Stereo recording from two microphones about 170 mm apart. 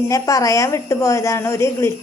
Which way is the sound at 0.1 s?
20° left (ahead or behind).